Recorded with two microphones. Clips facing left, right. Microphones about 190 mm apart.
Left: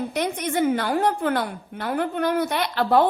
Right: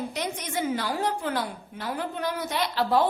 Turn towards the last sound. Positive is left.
turn(degrees=60)  # may be behind; listen again after turning